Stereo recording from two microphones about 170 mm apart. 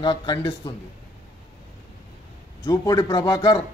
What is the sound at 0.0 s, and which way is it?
Speech, 25° left (ahead or behind).